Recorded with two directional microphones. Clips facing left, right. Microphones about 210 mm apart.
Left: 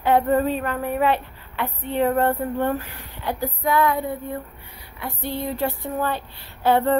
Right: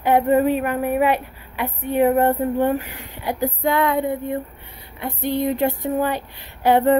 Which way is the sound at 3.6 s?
25° right (ahead or behind).